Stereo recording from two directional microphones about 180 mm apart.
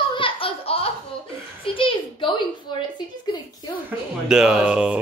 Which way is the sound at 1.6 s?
30° left (ahead or behind).